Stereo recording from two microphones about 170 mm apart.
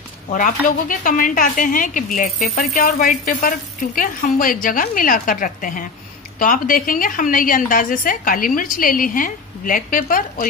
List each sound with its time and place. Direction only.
0.3 s a woman's voice: 50° left (ahead or behind)